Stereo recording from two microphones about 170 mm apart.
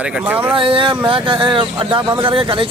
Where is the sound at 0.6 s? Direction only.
30° right (ahead or behind).